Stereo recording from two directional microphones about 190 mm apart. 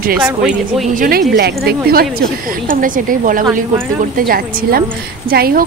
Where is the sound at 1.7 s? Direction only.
55° right (ahead or behind).